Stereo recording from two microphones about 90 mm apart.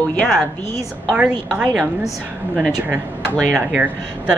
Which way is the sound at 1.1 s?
10° right (ahead or behind).